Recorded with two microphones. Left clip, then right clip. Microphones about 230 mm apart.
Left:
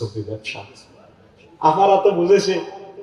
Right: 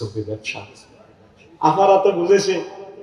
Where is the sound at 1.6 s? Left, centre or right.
Right.